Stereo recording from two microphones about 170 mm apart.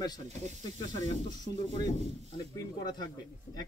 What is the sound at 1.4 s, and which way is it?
Speech, 30° left (ahead or behind).